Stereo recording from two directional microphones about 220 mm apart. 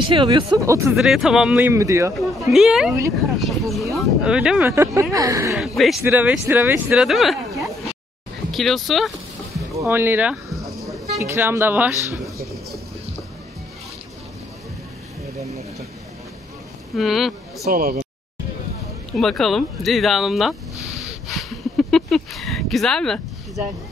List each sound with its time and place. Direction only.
0.0 s speech: 20° right (ahead or behind)
0.9 s speech: centre (ahead or behind)
2.5 s speech: centre (ahead or behind)
5.6 s speech: centre (ahead or behind)
9.8 s a sound: 10° right (ahead or behind)
11.1 s speech: 10° right (ahead or behind)
16.9 s speech: centre (ahead or behind)
17.6 s speech: 40° right (ahead or behind)
19.1 s a sound: centre (ahead or behind)